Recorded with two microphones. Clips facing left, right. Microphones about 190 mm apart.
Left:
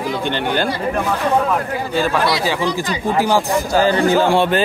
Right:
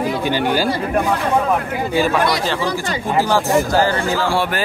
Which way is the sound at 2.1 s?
10° left (ahead or behind).